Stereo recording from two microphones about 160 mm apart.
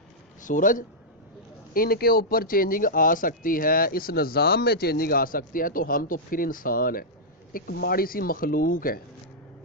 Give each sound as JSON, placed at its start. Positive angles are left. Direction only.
{"t": 0.4, "sound": "a man's voice", "side_deg": 55}
{"t": 1.7, "sound": "a man's voice", "side_deg": 70}
{"t": 7.5, "sound": "a man's voice", "side_deg": 80}